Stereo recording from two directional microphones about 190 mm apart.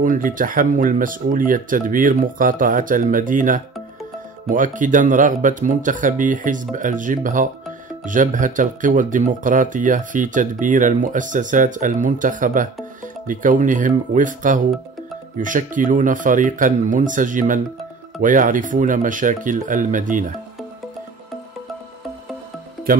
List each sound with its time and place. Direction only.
0.0 s speech: 45° right (ahead or behind)